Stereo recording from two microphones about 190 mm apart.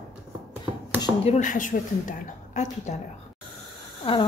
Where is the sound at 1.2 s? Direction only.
40° left (ahead or behind).